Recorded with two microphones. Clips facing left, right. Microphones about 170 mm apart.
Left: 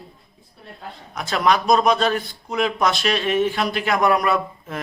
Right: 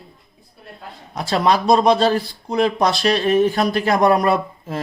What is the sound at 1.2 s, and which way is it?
A man's voice, 30° right (ahead or behind).